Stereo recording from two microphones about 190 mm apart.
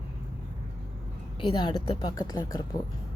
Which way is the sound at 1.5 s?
25° left (ahead or behind).